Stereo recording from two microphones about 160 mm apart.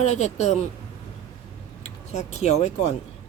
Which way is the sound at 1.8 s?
45° left (ahead or behind).